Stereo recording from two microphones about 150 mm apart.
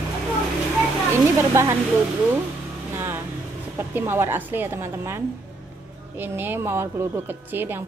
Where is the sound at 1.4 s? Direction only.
20° right (ahead or behind).